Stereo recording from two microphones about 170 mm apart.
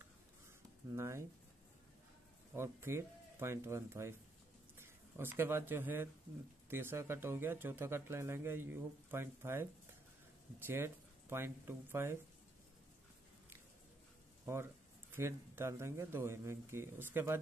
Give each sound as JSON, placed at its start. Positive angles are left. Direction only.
{"t": 0.8, "sound": "speech", "side_deg": -15}
{"t": 2.5, "sound": "speech", "side_deg": -15}
{"t": 10.7, "sound": "speech", "side_deg": -15}
{"t": 14.4, "sound": "speech", "side_deg": -15}